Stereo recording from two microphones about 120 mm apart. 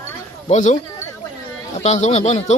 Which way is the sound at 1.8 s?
70° left (ahead or behind).